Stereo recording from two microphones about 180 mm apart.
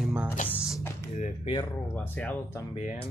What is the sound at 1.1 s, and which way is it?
Speech, 40° left (ahead or behind).